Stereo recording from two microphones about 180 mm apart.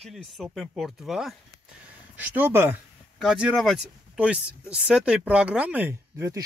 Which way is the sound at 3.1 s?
Centre (ahead or behind).